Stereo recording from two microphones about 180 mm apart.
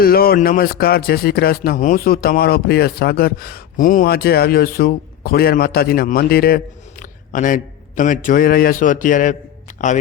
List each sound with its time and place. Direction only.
0.0 s a man's voice: 55° left (ahead or behind)